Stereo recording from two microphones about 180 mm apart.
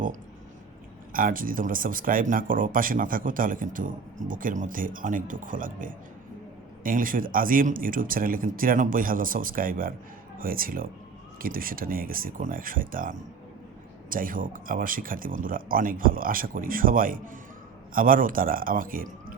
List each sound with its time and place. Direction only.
1.1 s speech: 50° right (ahead or behind)